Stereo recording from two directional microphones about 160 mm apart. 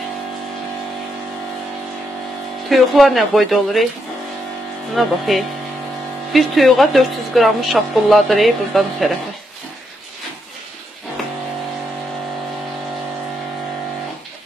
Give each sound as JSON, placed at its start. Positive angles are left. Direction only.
{"t": 2.7, "sound": "speech", "side_deg": 0}
{"t": 4.9, "sound": "speech", "side_deg": 0}